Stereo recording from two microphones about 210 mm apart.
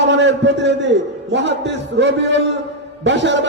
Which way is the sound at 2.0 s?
55° right (ahead or behind).